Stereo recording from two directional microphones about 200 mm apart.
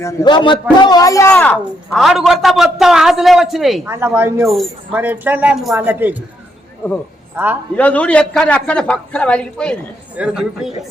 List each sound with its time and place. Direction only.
0.0 s a man's voice: 15° left (ahead or behind)
1.4 s a woman's voice: centre (ahead or behind)
3.8 s speech: 10° right (ahead or behind)
7.3 s speech: 10° right (ahead or behind)
7.8 s a woman's voice: 5° left (ahead or behind)